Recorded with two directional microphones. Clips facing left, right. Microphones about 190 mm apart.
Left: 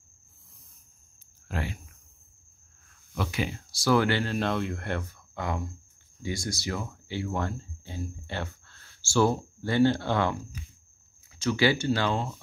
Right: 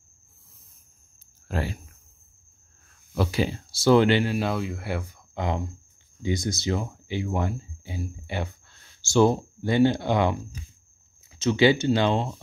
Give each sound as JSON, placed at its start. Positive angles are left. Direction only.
{"t": 1.5, "sound": "speech", "side_deg": -35}
{"t": 3.2, "sound": "speech", "side_deg": -35}